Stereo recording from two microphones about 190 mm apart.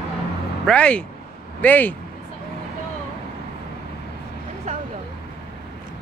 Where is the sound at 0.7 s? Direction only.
5° left (ahead or behind).